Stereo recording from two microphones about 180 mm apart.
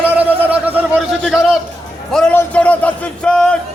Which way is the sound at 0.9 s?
5° right (ahead or behind).